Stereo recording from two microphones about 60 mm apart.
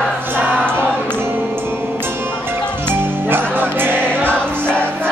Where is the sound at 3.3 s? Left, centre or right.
Right.